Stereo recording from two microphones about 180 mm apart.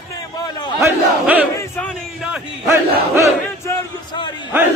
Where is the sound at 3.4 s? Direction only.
15° left (ahead or behind).